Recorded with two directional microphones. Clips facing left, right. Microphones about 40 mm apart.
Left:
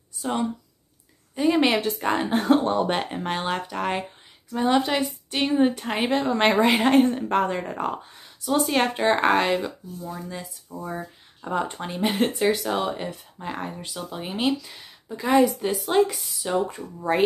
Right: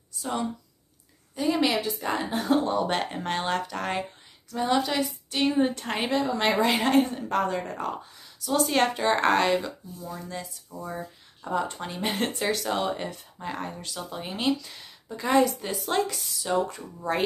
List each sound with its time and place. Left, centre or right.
1.3 s speech: left
1.8 s a woman's voice: left
2.9 s speech: centre
6.0 s speech: left
6.6 s speech: left
8.5 s speech: centre
8.9 s speech: left
9.2 s speech: centre
10.9 s a sound: centre
11.5 s speech: left
12.0 s speech: centre
13.5 s speech: centre
16.6 s speech: left